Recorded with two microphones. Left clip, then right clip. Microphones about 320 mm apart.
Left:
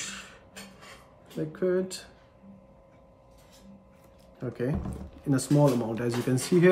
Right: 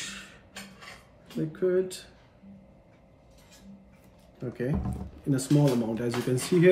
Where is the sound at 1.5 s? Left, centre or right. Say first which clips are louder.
Right 1 dB; centre.